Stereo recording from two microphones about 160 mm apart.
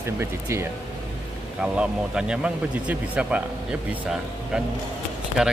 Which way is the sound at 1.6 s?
5° right (ahead or behind).